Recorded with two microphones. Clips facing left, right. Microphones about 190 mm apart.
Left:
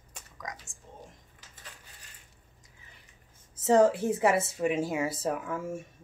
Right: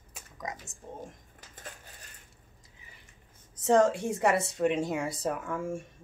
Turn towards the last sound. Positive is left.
turn(degrees=5)  # may be behind; listen again after turning